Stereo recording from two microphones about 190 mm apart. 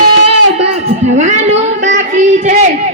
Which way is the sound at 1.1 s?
35° right (ahead or behind).